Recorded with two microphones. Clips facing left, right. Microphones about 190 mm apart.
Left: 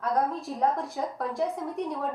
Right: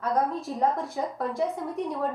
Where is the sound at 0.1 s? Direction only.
Centre (ahead or behind).